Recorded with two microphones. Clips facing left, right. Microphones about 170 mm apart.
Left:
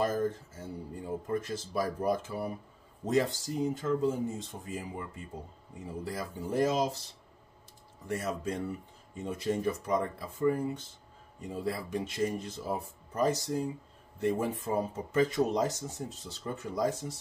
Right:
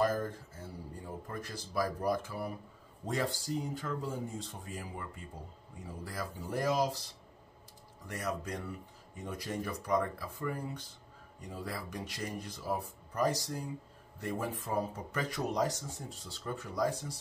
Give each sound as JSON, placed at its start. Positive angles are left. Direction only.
{"t": 0.0, "sound": "speech", "side_deg": 20}
{"t": 8.1, "sound": "speech", "side_deg": 25}